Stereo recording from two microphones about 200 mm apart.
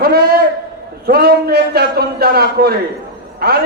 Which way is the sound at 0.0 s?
50° right (ahead or behind).